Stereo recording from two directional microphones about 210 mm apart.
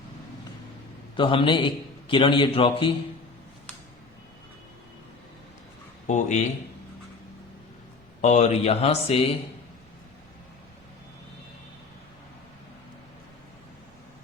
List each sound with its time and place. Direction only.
1.1 s a man's voice: 25° left (ahead or behind)
6.1 s a man's voice: 35° left (ahead or behind)
8.2 s a man's voice: 35° left (ahead or behind)